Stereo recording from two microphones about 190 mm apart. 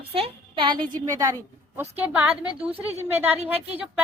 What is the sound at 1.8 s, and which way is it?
A woman's voice, 10° right (ahead or behind).